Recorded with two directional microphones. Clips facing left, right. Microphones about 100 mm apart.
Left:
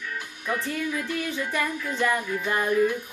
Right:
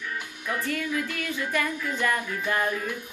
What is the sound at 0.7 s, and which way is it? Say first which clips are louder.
Music: even; 20° left (ahead or behind).